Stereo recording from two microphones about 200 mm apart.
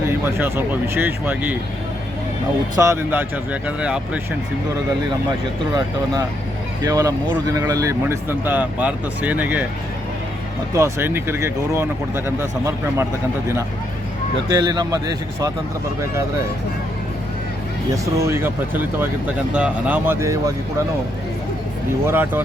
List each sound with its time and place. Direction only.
0.1 s speech: 10° right (ahead or behind)
2.7 s speech: 15° right (ahead or behind)
6.8 s speech: 15° right (ahead or behind)
10.8 s speech: 15° right (ahead or behind)
14.4 s a man's voice: 20° right (ahead or behind)
17.9 s speech: 15° right (ahead or behind)
22.0 s speech: 10° right (ahead or behind)